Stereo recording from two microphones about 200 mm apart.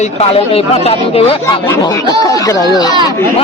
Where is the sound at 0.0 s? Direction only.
30° left (ahead or behind).